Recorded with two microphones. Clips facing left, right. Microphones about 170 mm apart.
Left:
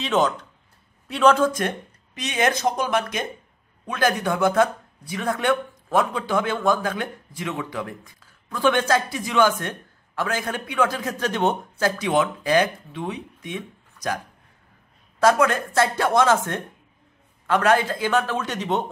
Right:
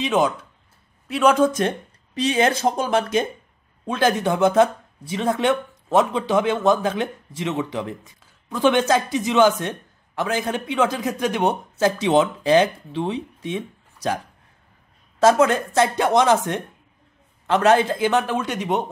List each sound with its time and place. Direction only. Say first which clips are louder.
0.0 s a man's voice: right 1 dB; 10° right (ahead or behind)
1.3 s speech: right 3 dB; 20° right (ahead or behind)